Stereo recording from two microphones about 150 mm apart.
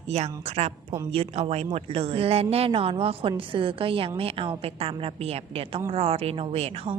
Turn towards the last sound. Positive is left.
turn(degrees=-40)  # may be behind; listen again after turning